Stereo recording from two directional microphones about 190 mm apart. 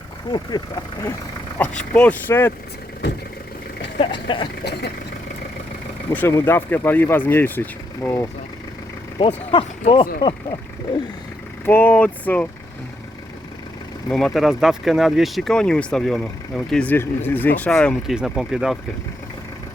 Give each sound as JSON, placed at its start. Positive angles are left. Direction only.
{"t": 0.3, "sound": "speech", "side_deg": 25}
{"t": 1.5, "sound": "speech", "side_deg": 5}
{"t": 3.9, "sound": "speech", "side_deg": 25}
{"t": 6.1, "sound": "speech", "side_deg": 15}
{"t": 9.1, "sound": "speech", "side_deg": 30}
{"t": 11.6, "sound": "speech", "side_deg": 10}
{"t": 14.1, "sound": "speech", "side_deg": 5}